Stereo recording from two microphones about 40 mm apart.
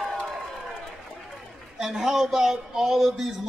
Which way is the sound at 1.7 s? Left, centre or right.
Centre.